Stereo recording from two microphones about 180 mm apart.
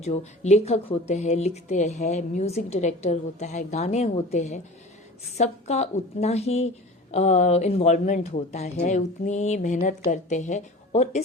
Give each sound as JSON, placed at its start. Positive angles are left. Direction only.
{"t": 0.0, "sound": "a woman's voice", "side_deg": 40}